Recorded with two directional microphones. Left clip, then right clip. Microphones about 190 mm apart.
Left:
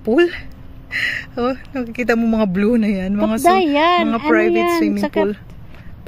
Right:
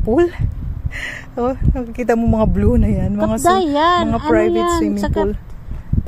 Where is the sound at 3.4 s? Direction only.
90° left.